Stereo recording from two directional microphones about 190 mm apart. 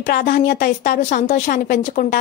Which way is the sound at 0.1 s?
50° left (ahead or behind).